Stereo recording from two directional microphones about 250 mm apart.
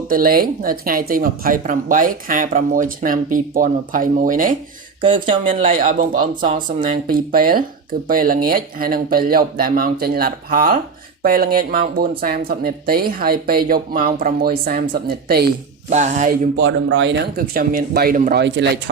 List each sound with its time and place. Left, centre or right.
0.1 s speech: right
5.0 s speech: centre
5.5 s speech: right
16.6 s speech: right